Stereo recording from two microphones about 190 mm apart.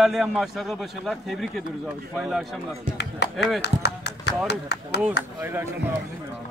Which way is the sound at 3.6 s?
60° left (ahead or behind).